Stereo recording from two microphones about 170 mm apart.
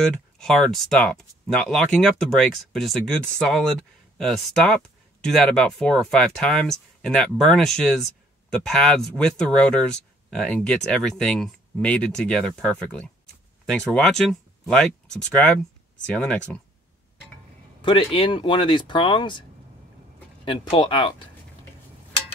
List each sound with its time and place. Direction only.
0.0 s speech: 5° left (ahead or behind)
17.8 s speech: 30° left (ahead or behind)
20.7 s speech: 30° left (ahead or behind)